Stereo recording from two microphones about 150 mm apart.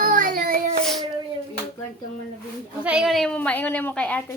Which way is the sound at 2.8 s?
5° right (ahead or behind).